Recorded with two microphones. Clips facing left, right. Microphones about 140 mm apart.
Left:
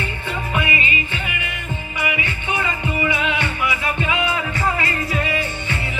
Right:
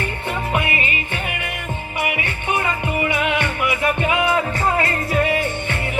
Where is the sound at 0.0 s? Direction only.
50° right (ahead or behind).